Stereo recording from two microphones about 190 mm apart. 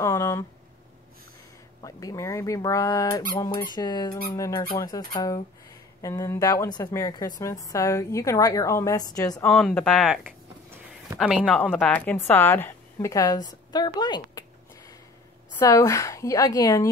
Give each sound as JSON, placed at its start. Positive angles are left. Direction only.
{"t": 0.0, "sound": "speech", "side_deg": 15}
{"t": 1.8, "sound": "a woman's voice", "side_deg": 20}
{"t": 9.5, "sound": "a woman's voice", "side_deg": 5}
{"t": 15.6, "sound": "a woman's voice", "side_deg": 15}